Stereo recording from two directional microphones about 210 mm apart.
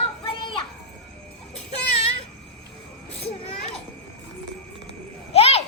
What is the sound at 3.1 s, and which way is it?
Children playing, 30° left (ahead or behind).